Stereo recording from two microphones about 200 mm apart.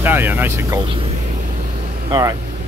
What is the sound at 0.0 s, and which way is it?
Speech, 10° right (ahead or behind).